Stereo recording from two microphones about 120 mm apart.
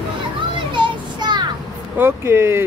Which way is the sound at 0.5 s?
40° right (ahead or behind).